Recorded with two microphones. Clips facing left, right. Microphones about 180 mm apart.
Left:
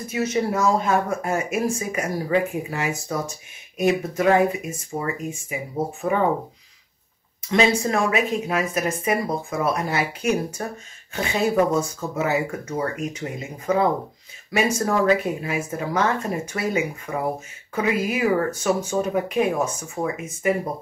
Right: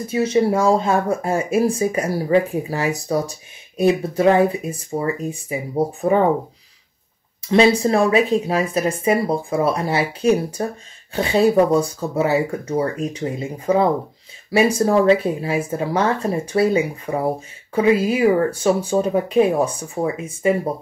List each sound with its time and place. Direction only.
0.0 s speech: 30° right (ahead or behind)
7.4 s speech: 30° right (ahead or behind)